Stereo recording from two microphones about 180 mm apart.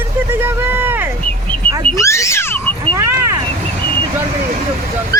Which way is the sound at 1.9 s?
15° left (ahead or behind).